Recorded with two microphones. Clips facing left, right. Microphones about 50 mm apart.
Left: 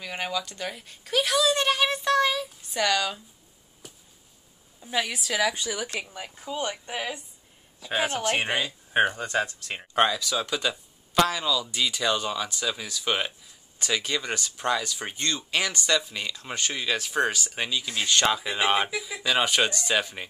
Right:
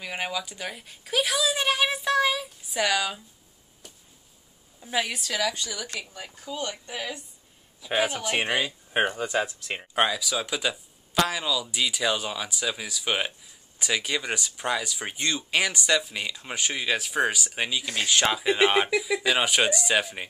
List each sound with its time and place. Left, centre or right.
0.0 s speech: centre
3.8 s a sound: centre
4.8 s a woman's voice: centre
5.3 s speech: centre
8.5 s speech: centre